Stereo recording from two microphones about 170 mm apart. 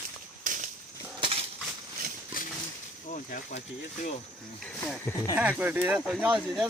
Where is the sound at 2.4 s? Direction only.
55° left (ahead or behind).